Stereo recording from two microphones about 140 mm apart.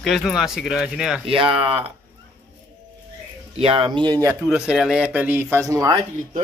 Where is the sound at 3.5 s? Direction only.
40° right (ahead or behind).